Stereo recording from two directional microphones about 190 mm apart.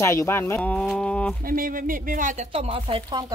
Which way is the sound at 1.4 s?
50° right (ahead or behind).